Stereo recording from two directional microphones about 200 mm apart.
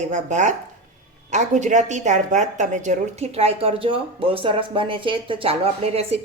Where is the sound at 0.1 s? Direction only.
35° right (ahead or behind).